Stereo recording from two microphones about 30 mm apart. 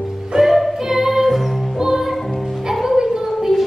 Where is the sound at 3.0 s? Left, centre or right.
Centre.